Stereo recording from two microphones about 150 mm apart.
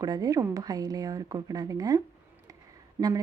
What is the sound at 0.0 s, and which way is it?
Speech, 25° right (ahead or behind).